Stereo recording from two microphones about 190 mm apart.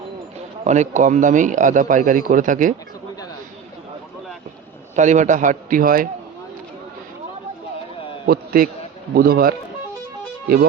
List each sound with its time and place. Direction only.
0.6 s speech: 40° right (ahead or behind)
4.9 s speech: 40° right (ahead or behind)
8.3 s speech: 50° right (ahead or behind)